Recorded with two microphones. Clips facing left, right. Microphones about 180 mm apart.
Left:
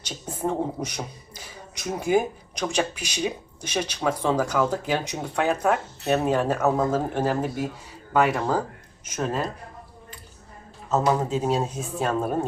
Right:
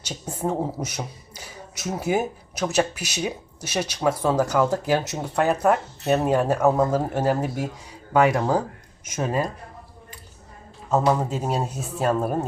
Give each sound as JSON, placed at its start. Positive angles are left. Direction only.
{"t": 0.0, "sound": "a sound", "side_deg": -10}
{"t": 0.4, "sound": "speech", "side_deg": -10}
{"t": 11.0, "sound": "a woman's voice", "side_deg": -5}